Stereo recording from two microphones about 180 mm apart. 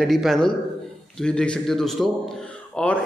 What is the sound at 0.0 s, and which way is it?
A man's voice, centre (ahead or behind).